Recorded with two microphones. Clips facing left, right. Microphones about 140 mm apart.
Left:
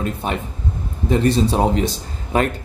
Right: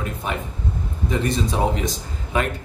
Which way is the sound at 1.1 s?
35° left (ahead or behind).